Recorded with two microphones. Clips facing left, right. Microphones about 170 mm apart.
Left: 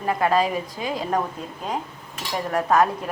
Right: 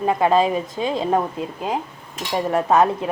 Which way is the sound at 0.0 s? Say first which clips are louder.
Right 4 dB; 20° right (ahead or behind).